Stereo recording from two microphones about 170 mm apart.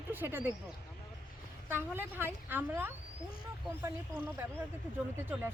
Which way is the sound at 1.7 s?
10° right (ahead or behind).